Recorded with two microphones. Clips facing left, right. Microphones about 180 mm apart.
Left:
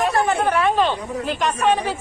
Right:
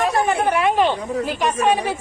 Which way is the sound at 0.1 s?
15° right (ahead or behind).